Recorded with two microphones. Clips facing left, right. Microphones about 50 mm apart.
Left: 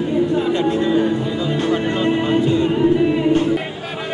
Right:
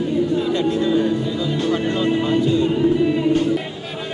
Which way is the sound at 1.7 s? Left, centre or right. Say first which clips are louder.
Left 1 dB; centre.